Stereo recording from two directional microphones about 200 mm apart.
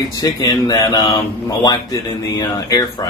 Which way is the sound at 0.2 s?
20° left (ahead or behind).